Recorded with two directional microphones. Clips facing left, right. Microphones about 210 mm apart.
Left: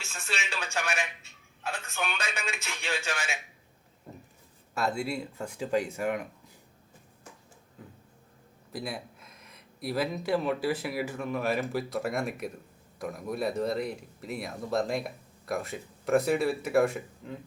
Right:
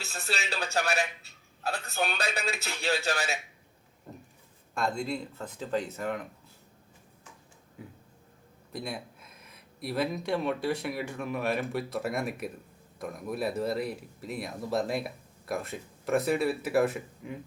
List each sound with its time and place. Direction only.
0.0 s a man's voice: 35° right (ahead or behind)
4.7 s speech: 5° left (ahead or behind)
7.8 s a sound: 10° right (ahead or behind)
8.7 s speech: centre (ahead or behind)